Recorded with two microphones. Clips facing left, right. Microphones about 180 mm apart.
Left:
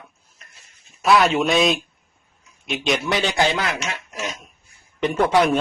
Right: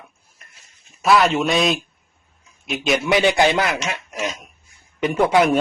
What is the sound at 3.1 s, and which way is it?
Speech, 15° right (ahead or behind).